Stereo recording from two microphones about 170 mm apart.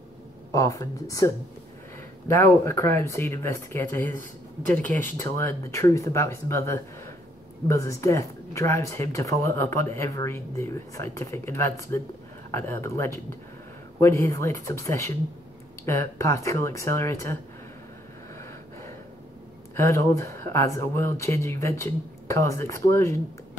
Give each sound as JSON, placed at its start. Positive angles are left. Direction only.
{"t": 0.5, "sound": "speech", "side_deg": 20}
{"t": 19.7, "sound": "speech", "side_deg": 15}